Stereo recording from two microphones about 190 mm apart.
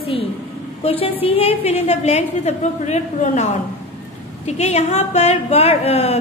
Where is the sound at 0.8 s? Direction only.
30° left (ahead or behind).